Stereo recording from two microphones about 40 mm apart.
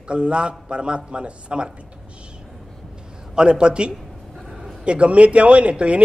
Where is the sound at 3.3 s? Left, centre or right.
Right.